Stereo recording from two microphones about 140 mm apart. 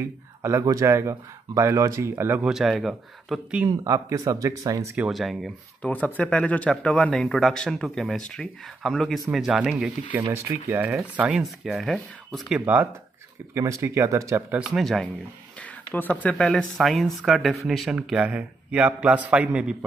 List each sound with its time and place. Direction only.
0.0 s speech: 20° right (ahead or behind)
2.5 s speech: centre (ahead or behind)
3.6 s speech: 20° right (ahead or behind)
4.9 s speech: 5° right (ahead or behind)
5.9 s speech: 10° left (ahead or behind); by 9.9 s 5° right (ahead or behind)
10.1 s speech: 15° right (ahead or behind)
11.0 s speech: 5° right (ahead or behind)
13.6 s speech: 20° right (ahead or behind)
14.6 s speech: centre (ahead or behind)
15.9 s speech: 10° left (ahead or behind); by 19.8 s 5° right (ahead or behind)